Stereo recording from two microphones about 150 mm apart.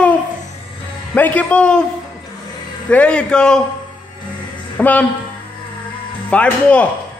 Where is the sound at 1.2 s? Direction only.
10° left (ahead or behind).